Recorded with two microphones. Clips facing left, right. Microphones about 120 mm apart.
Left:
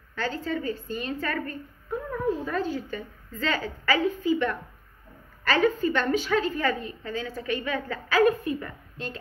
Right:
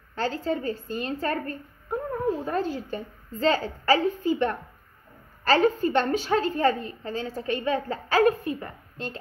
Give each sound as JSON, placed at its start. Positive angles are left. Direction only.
{"t": 0.1, "sound": "a woman's voice", "side_deg": -35}